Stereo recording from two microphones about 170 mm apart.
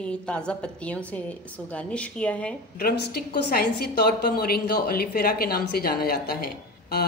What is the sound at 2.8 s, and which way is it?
A woman's voice, 70° left (ahead or behind).